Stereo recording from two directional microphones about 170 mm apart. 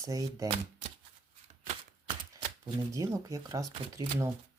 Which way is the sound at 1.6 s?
40° right (ahead or behind).